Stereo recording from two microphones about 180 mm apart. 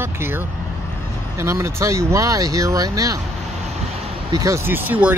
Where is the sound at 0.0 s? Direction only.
10° right (ahead or behind).